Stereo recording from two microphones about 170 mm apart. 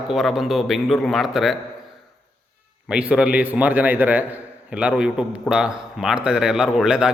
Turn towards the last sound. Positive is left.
turn(degrees=-5)  # may be behind; listen again after turning